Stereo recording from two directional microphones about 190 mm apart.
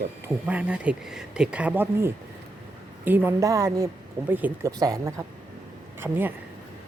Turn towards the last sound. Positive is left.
turn(degrees=-10)  # may be behind; listen again after turning